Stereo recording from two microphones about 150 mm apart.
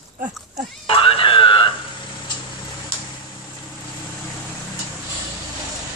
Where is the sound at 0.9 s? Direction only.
35° left (ahead or behind).